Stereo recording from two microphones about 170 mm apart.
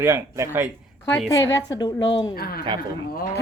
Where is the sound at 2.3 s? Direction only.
65° left (ahead or behind).